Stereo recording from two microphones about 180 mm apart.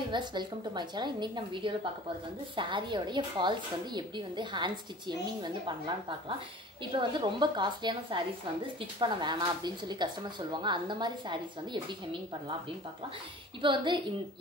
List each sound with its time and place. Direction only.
0.1 s a woman's voice: 25° right (ahead or behind)
13.6 s a woman's voice: 25° right (ahead or behind)